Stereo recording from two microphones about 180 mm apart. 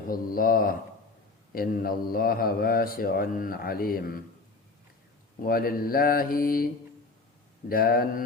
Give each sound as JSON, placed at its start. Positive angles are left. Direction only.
{"t": 0.1, "sound": "speech", "side_deg": 50}
{"t": 5.4, "sound": "speech", "side_deg": 55}
{"t": 7.7, "sound": "speech", "side_deg": 55}